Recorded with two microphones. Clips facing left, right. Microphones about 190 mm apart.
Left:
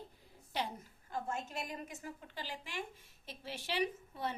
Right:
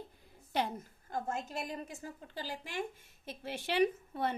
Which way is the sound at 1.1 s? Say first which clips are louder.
Right 3 dB; 35° right (ahead or behind).